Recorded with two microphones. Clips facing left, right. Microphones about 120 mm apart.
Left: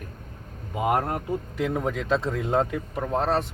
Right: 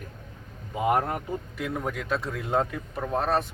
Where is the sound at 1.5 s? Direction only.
25° left (ahead or behind).